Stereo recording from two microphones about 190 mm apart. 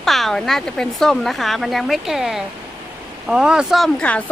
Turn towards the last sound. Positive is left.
turn(degrees=5)  # may be behind; listen again after turning